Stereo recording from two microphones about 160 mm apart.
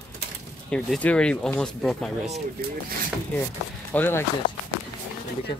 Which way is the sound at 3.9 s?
15° left (ahead or behind).